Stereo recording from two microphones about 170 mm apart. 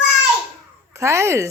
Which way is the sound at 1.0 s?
15° right (ahead or behind).